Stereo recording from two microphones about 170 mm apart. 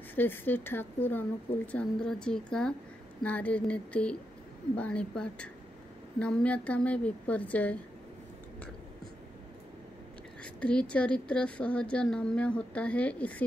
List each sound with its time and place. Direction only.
0.1 s a woman's voice: 10° left (ahead or behind)
10.4 s a woman's voice: 5° left (ahead or behind)